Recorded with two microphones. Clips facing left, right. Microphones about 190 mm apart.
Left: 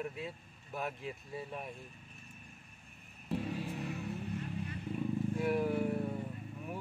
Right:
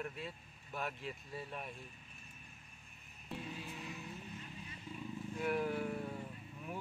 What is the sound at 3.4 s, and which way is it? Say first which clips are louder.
Vehicle: left 7 dB; 60° left (ahead or behind).